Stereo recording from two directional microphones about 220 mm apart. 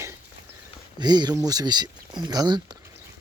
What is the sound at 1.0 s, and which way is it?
Speech, 20° right (ahead or behind).